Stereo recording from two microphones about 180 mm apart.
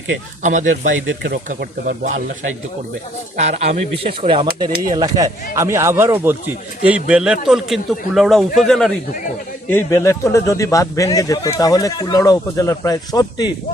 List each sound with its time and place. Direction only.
0.4 s speech: 45° right (ahead or behind)
0.9 s speech: 80° right
1.5 s speech: 45° right (ahead or behind)
3.3 s a man's voice: 40° right (ahead or behind); by 8.9 s 5° left (ahead or behind)
9.6 s speech: 15° left (ahead or behind)